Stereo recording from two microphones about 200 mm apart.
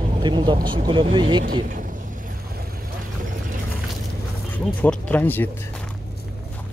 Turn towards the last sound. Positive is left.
turn(degrees=10)  # may be behind; listen again after turning